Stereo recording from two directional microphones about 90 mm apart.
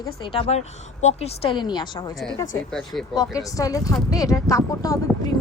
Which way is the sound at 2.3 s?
40° left (ahead or behind).